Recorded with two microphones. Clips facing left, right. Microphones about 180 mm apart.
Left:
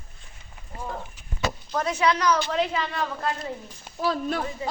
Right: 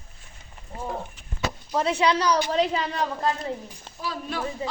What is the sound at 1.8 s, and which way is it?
A woman's voice, 30° right (ahead or behind).